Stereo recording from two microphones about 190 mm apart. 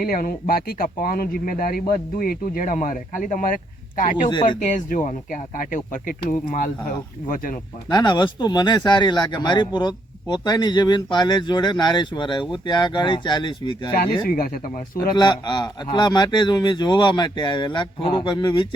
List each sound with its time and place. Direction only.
0.0 s speech: 50° left (ahead or behind)
7.9 s speech: 20° left (ahead or behind)
14.3 s speech: 50° left (ahead or behind)
15.1 s speech: 25° left (ahead or behind)